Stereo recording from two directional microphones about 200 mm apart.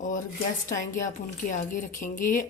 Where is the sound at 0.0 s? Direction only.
40° left (ahead or behind).